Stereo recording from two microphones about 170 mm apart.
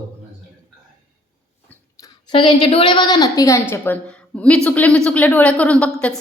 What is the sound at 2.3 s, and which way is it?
A woman's voice, 30° left (ahead or behind).